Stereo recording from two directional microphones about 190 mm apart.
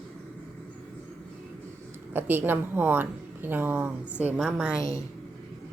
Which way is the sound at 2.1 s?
10° right (ahead or behind).